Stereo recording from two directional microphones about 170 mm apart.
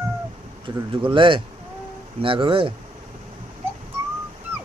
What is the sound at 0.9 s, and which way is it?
Speech, 30° right (ahead or behind).